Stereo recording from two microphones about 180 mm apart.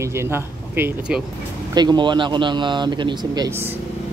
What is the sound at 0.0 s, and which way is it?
Speech, 15° right (ahead or behind).